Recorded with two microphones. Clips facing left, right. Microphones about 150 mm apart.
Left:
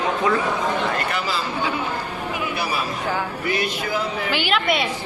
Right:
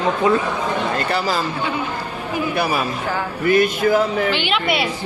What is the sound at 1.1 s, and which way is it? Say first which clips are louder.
Speech: right 5 dB; 45° right (ahead or behind).